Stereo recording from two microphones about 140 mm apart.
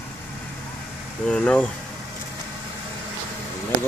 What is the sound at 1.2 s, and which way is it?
Speech, 10° left (ahead or behind).